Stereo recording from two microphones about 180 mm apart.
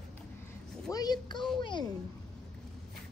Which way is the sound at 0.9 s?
20° left (ahead or behind).